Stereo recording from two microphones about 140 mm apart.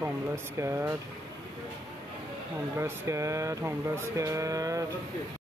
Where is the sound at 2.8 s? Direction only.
20° right (ahead or behind).